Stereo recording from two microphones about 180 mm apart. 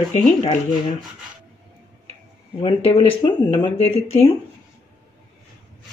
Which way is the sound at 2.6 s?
30° left (ahead or behind).